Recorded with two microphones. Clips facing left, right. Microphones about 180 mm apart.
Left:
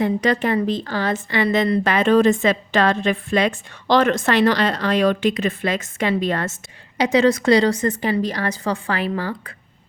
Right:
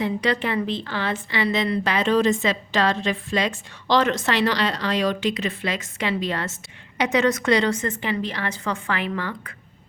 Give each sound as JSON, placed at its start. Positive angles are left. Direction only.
{"t": 0.0, "sound": "a woman's voice", "side_deg": 45}
{"t": 6.9, "sound": "a woman's voice", "side_deg": 30}